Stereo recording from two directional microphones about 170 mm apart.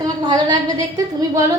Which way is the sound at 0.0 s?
20° right (ahead or behind).